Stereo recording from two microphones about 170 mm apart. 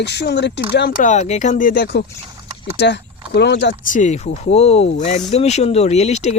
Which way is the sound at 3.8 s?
50° left (ahead or behind).